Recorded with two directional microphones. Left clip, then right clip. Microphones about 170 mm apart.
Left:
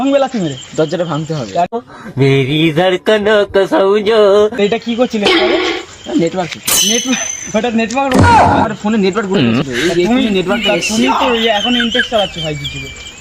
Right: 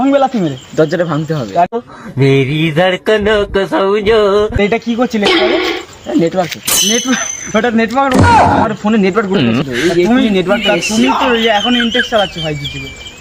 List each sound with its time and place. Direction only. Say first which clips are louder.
0.0 s speech: right 2 dB; 20° left (ahead or behind)
0.8 s mantra: right 3 dB; centre (ahead or behind)
4.6 s speech: even; 25° left (ahead or behind)
5.2 s mantra: right 1 dB; centre (ahead or behind)
7.1 s speech: right 2 dB; 20° left (ahead or behind)
8.1 s mantra: left 1 dB; centre (ahead or behind)